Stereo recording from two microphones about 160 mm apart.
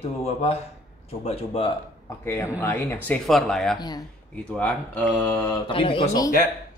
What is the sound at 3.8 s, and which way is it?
Speech, 25° left (ahead or behind).